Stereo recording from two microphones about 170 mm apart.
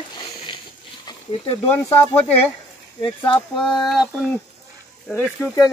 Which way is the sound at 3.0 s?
30° left (ahead or behind).